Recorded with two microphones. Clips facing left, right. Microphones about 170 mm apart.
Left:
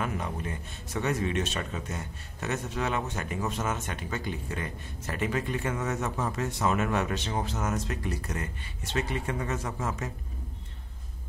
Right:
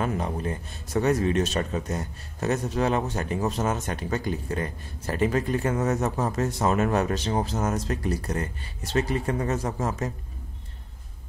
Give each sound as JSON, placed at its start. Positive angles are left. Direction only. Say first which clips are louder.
{"t": 0.0, "sound": "speech", "louder": "right 5 dB", "side_deg": -35}